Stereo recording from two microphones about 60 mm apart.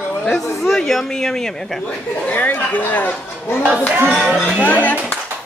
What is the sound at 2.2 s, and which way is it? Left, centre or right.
Speech, left.